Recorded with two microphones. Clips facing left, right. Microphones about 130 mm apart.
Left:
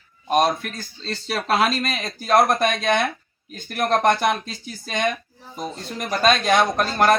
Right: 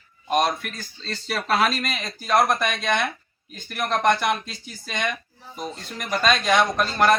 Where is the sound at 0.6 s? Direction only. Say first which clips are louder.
Left 3 dB; 30° left (ahead or behind).